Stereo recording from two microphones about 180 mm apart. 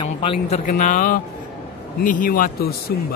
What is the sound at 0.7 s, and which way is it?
Speech, 45° left (ahead or behind).